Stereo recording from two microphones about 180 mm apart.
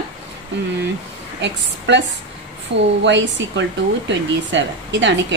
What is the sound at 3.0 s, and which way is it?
A woman's voice, 85° right.